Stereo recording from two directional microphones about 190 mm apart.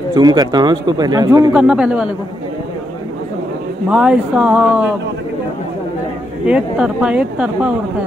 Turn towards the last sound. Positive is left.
turn(degrees=-5)  # may be behind; listen again after turning